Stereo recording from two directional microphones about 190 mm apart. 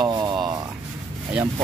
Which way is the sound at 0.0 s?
20° right (ahead or behind).